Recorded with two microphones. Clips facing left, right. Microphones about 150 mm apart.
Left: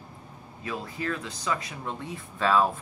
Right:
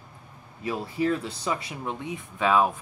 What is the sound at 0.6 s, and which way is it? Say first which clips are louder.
Speech: right 6 dB; 25° right (ahead or behind).